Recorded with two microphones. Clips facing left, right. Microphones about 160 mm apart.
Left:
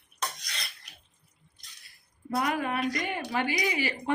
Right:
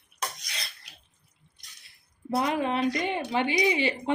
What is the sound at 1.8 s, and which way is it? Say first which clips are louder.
Speech: right 3 dB; 25° right (ahead or behind).